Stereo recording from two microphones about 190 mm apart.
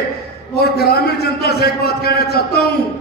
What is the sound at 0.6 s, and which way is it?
A man's voice, 55° left (ahead or behind).